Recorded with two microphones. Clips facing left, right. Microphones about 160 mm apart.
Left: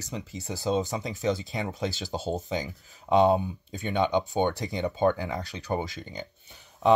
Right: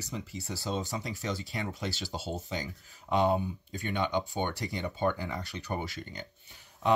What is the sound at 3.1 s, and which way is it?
Speech, 55° left (ahead or behind).